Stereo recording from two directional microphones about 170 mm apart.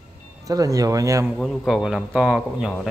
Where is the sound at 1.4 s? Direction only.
Centre (ahead or behind).